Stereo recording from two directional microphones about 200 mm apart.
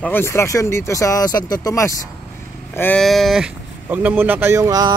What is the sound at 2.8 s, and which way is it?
Speech, 5° left (ahead or behind).